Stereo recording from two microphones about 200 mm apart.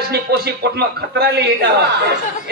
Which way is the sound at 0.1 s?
55° right (ahead or behind).